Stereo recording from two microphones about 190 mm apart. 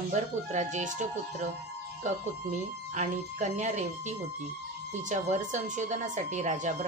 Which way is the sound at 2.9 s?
40° right (ahead or behind).